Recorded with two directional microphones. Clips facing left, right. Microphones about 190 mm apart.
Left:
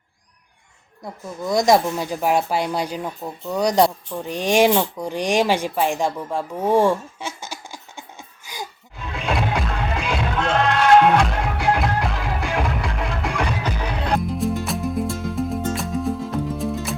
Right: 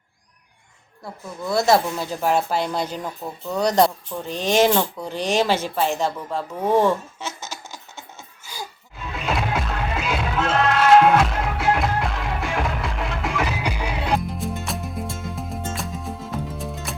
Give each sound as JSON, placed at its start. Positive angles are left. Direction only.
{"t": 1.0, "sound": "speech", "side_deg": 15}
{"t": 8.5, "sound": "a sound", "side_deg": 15}
{"t": 9.0, "sound": "music", "side_deg": 0}